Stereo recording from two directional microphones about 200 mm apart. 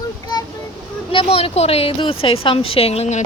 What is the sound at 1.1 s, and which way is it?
A woman's voice, 30° left (ahead or behind).